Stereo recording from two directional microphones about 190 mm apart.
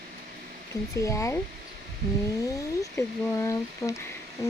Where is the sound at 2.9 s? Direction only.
15° left (ahead or behind).